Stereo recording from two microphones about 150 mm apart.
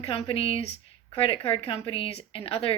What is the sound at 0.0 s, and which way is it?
A woman's voice, 40° left (ahead or behind).